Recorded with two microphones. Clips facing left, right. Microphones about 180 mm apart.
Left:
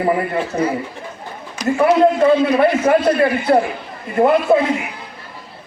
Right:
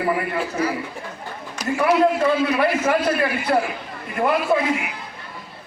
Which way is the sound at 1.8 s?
25° left (ahead or behind).